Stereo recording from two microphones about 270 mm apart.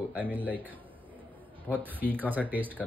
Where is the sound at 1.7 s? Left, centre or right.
Centre.